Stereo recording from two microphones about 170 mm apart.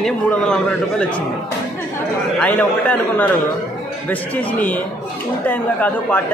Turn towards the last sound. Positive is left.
turn(degrees=10)  # may be behind; listen again after turning